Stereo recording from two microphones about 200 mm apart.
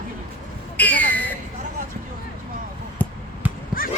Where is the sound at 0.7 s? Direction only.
10° left (ahead or behind).